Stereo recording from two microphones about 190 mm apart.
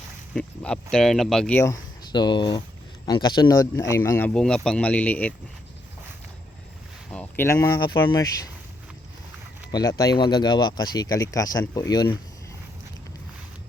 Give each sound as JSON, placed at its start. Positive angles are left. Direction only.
{"t": 0.3, "sound": "speech", "side_deg": 5}
{"t": 7.1, "sound": "speech", "side_deg": 10}
{"t": 9.7, "sound": "speech", "side_deg": 20}